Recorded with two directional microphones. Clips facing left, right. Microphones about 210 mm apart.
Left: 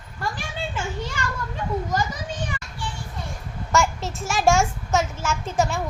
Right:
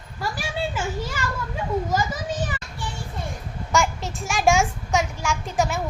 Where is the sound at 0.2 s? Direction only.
10° right (ahead or behind).